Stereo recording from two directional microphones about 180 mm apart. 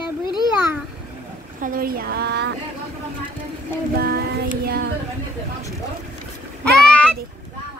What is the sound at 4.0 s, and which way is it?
Speech, 60° right (ahead or behind).